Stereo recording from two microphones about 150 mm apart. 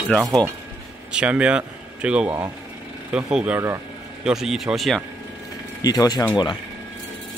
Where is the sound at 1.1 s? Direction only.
10° right (ahead or behind).